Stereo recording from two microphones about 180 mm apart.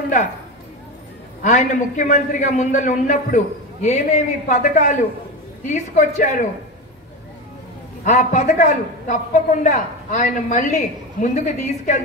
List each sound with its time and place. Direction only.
1.4 s a man's voice: 40° left (ahead or behind)
8.0 s a man's voice: 40° left (ahead or behind)